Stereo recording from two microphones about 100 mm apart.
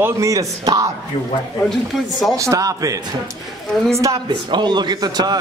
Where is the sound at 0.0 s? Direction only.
30° right (ahead or behind).